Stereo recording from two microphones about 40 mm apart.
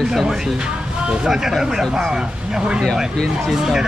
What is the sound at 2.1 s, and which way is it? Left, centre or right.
Speech, centre.